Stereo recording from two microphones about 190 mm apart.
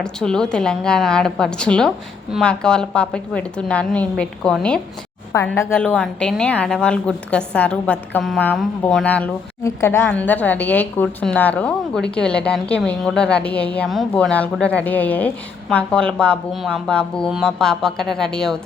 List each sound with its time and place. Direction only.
0.0 s a woman's voice: 5° left (ahead or behind)